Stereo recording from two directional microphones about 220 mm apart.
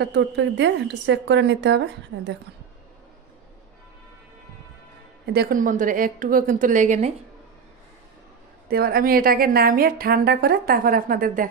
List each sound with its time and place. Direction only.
0.0 s a woman's voice: 50° right (ahead or behind)
5.2 s a woman's voice: 45° right (ahead or behind)
8.6 s a woman's voice: 45° right (ahead or behind)